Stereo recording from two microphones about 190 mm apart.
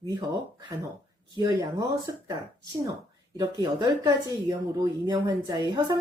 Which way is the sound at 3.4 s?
20° right (ahead or behind).